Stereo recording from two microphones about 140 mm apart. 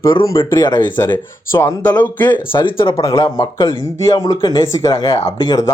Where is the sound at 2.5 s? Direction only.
40° left (ahead or behind).